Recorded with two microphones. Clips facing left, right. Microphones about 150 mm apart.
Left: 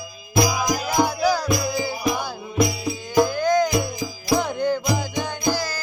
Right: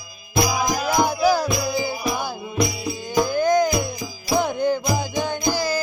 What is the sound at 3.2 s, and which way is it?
Music, 15° right (ahead or behind).